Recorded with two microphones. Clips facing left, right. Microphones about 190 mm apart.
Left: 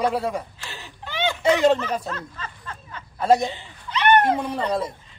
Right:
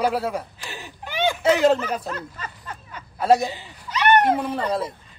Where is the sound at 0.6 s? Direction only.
15° right (ahead or behind).